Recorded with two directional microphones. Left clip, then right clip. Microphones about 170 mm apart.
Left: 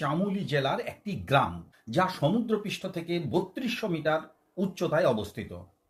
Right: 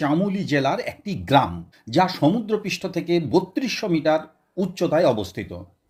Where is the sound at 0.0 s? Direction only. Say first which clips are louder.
Right 7 dB; 30° right (ahead or behind).